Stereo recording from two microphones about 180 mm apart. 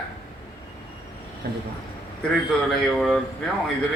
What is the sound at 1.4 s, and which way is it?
Speech, 60° right (ahead or behind).